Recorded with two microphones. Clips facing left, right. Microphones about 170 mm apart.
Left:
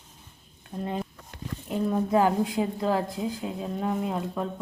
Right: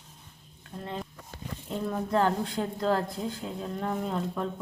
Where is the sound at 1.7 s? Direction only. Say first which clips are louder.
Left 4 dB; 10° left (ahead or behind).